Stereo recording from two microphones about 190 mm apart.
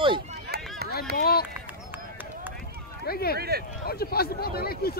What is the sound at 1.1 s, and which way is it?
Speech, 55° left (ahead or behind).